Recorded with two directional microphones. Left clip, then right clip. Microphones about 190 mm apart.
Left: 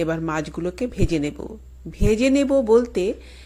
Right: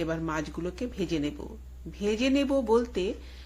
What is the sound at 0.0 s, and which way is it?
Speech, 35° left (ahead or behind).